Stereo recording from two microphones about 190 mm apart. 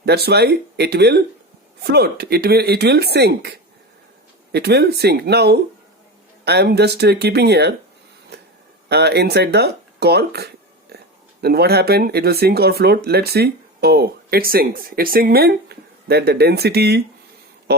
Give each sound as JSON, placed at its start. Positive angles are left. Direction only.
{"t": 0.0, "sound": "speech", "side_deg": -60}
{"t": 8.9, "sound": "speech", "side_deg": -60}